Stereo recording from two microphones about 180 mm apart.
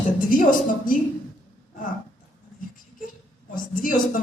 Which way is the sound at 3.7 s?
50° left (ahead or behind).